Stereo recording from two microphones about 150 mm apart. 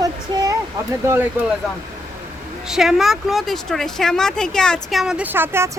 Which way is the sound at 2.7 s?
Centre (ahead or behind).